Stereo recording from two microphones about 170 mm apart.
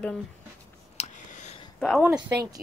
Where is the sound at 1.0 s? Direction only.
45° left (ahead or behind).